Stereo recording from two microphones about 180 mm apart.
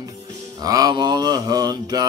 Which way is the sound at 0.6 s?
20° right (ahead or behind).